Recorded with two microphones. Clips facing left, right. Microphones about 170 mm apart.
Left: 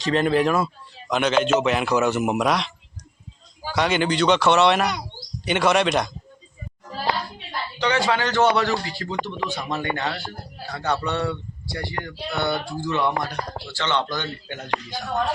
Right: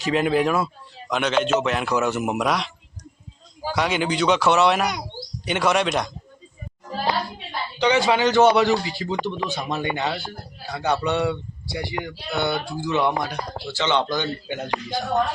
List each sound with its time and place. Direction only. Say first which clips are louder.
0.0 s a man's voice: even; 5° right (ahead or behind)
7.8 s speech: right 3 dB; 15° right (ahead or behind)